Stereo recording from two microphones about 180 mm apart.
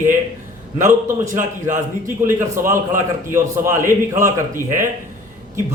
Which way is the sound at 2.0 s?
15° right (ahead or behind).